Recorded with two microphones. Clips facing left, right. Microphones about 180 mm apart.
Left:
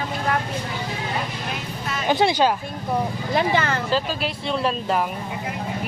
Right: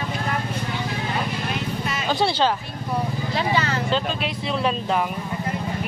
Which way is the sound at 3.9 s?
Centre (ahead or behind).